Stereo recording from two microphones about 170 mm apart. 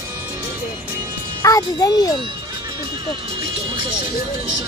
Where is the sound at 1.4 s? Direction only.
20° left (ahead or behind).